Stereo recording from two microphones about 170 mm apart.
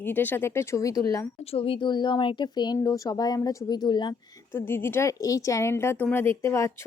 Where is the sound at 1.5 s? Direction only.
30° left (ahead or behind).